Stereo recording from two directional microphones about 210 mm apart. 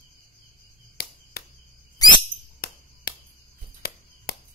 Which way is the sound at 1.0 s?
50° left (ahead or behind).